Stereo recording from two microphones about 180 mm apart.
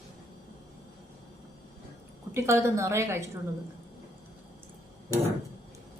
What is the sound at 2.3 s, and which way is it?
A woman's voice, 15° right (ahead or behind).